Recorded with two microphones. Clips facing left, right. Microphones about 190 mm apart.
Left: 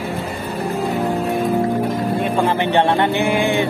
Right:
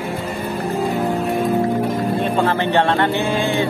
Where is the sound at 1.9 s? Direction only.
10° left (ahead or behind).